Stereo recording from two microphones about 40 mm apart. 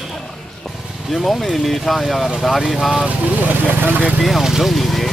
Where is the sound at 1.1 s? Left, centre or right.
Centre.